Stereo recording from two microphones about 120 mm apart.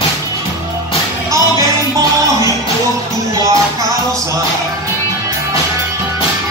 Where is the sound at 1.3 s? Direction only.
25° right (ahead or behind).